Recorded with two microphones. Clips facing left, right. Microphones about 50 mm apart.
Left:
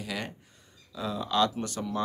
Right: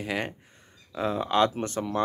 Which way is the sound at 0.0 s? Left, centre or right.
Right.